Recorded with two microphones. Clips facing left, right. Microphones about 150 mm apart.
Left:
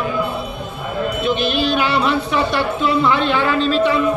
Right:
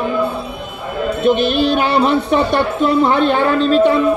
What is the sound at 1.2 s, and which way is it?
Speech, 50° right (ahead or behind).